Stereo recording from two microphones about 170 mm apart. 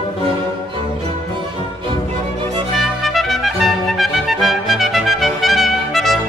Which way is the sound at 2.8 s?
Centre (ahead or behind).